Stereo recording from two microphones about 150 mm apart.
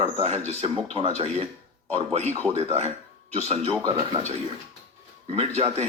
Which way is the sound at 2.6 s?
45° right (ahead or behind).